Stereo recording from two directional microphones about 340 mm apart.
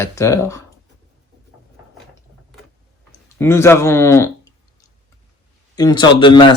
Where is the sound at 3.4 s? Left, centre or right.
Centre.